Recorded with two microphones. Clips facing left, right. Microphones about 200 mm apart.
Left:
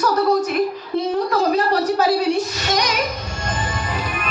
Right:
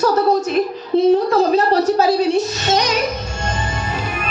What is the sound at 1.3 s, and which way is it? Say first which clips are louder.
A woman's voice: right 3 dB; 25° right (ahead or behind).